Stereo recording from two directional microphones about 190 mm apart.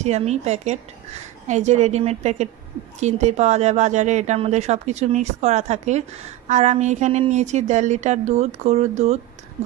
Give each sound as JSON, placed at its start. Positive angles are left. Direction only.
{"t": 0.0, "sound": "a woman's voice", "side_deg": -35}